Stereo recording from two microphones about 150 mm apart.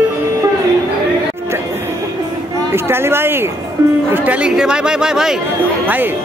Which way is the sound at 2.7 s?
15° right (ahead or behind).